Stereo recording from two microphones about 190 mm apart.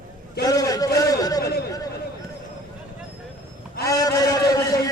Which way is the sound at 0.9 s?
20° left (ahead or behind).